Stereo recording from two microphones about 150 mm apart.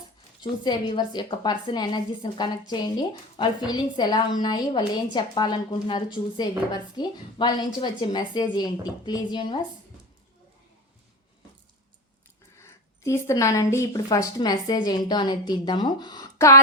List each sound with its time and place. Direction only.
0.6 s speech: 30° left (ahead or behind)
12.6 s speech: 20° left (ahead or behind)